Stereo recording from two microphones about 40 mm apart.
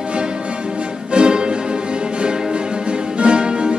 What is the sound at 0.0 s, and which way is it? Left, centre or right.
Music, right.